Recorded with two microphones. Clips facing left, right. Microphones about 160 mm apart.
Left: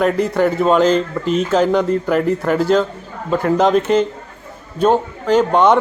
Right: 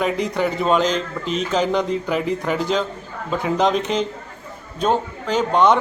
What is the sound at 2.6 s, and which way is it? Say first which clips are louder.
Speech: left 9 dB; 50° left (ahead or behind).